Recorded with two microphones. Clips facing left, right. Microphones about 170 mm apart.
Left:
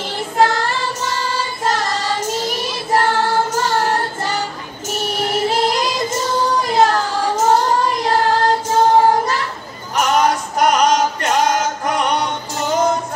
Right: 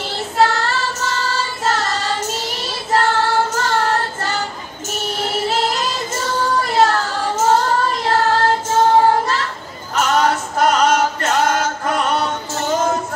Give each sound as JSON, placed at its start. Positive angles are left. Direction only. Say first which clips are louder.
{"t": 0.1, "sound": "child singing", "louder": "left 1 dB", "side_deg": 15}
{"t": 9.9, "sound": "female singing", "louder": "left 1 dB", "side_deg": 15}